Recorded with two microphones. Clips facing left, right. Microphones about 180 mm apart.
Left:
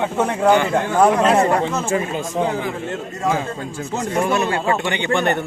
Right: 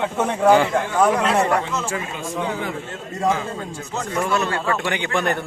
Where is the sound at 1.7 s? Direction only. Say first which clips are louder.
Left 5 dB; 45° left (ahead or behind).